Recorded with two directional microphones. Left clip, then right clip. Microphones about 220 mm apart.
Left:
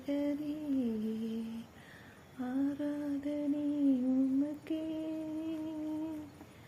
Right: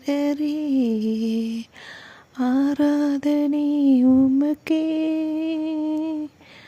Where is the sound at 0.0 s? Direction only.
45° right (ahead or behind).